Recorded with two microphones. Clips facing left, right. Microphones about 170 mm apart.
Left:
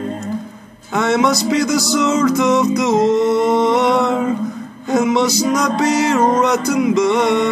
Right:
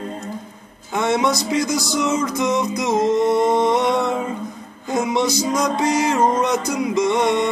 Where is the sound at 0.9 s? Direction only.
75° left (ahead or behind).